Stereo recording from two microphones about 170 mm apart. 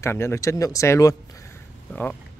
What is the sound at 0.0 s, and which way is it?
Speech, 15° left (ahead or behind).